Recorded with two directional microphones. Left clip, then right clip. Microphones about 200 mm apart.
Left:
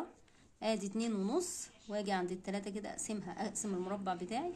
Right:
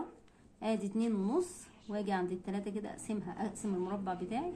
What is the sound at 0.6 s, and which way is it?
A woman's voice, 45° left (ahead or behind).